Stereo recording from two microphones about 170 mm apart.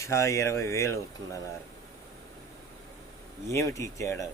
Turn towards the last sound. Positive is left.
turn(degrees=15)  # may be behind; listen again after turning